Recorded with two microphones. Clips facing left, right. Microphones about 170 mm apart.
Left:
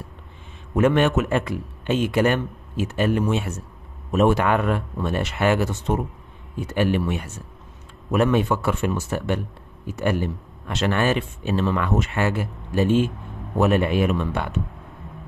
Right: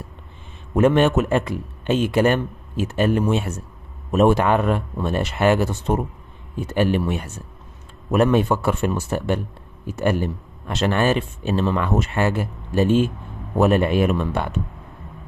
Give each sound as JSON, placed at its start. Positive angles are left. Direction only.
{"t": 0.7, "sound": "speech", "side_deg": -30}